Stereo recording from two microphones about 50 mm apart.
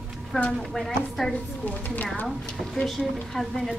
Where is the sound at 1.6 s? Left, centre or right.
Left.